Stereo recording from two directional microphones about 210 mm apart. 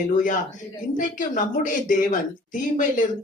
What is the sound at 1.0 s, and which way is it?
Speech, 40° left (ahead or behind).